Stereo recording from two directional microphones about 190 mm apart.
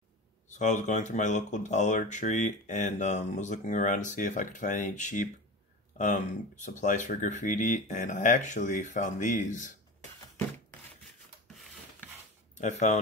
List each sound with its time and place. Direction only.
0.5 s speech: 40° left (ahead or behind)
12.5 s speech: 40° left (ahead or behind)